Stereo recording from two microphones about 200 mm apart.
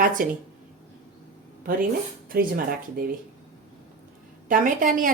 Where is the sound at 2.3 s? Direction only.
50° right (ahead or behind).